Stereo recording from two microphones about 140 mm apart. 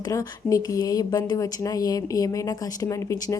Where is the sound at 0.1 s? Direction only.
25° left (ahead or behind).